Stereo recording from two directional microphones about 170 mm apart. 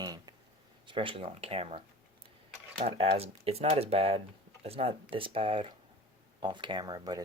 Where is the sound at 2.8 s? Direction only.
35° right (ahead or behind).